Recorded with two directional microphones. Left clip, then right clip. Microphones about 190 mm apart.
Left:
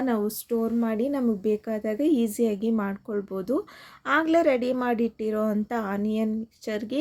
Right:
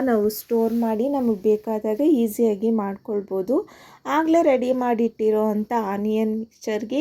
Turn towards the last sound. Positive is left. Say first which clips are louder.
# right 5 dB
turn(degrees=5)  # may be behind; listen again after turning